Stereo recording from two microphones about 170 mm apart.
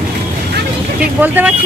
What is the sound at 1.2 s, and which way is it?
Speech, 10° right (ahead or behind).